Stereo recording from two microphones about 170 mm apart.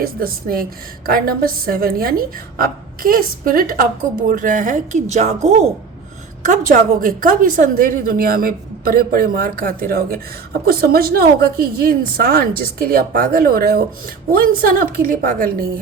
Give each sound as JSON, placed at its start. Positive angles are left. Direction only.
{"t": 0.0, "sound": "a woman's voice", "side_deg": -60}
{"t": 6.4, "sound": "a woman's voice", "side_deg": -50}